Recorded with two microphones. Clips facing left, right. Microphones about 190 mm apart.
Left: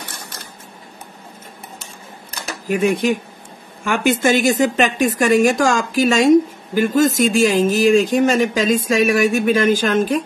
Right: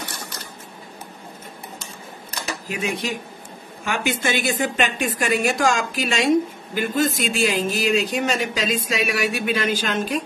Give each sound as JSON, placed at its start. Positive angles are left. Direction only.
{"t": 2.7, "sound": "a woman's voice", "side_deg": 50}